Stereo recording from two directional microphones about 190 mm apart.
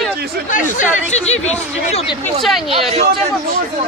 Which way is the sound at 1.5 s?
35° left (ahead or behind).